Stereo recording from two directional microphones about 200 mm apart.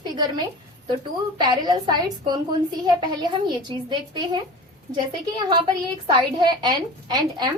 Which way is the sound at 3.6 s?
20° right (ahead or behind).